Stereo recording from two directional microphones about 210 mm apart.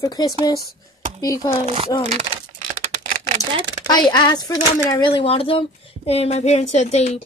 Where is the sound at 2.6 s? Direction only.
40° right (ahead or behind).